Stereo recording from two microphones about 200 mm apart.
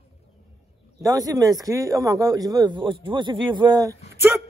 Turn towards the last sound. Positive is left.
turn(degrees=-20)  # may be behind; listen again after turning